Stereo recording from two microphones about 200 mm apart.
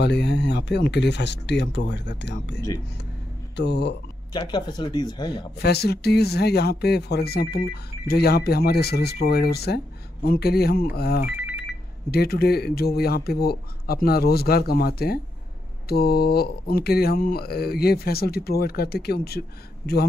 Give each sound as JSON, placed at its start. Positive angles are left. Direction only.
{"t": 0.0, "sound": "speech", "side_deg": 55}
{"t": 4.3, "sound": "speech", "side_deg": 20}
{"t": 5.6, "sound": "speech", "side_deg": 55}
{"t": 11.3, "sound": "telephone bell ringing", "side_deg": -10}
{"t": 12.1, "sound": "speech", "side_deg": 50}